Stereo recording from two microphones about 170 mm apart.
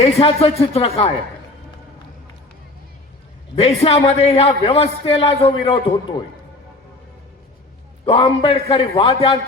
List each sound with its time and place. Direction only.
0.0 s a man's voice: 35° left (ahead or behind)
3.5 s a man's voice: 35° left (ahead or behind)
8.0 s a man's voice: 30° left (ahead or behind)